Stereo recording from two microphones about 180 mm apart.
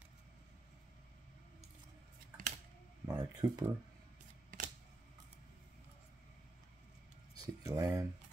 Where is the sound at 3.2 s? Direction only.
20° right (ahead or behind).